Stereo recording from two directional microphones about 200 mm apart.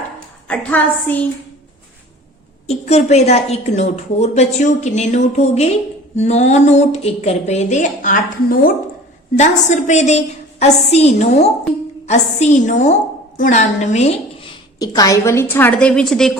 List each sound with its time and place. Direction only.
0.4 s a woman's voice: 5° left (ahead or behind)
2.6 s a woman's voice: 35° left (ahead or behind)
14.8 s a woman's voice: 15° left (ahead or behind); by 16.4 s centre (ahead or behind)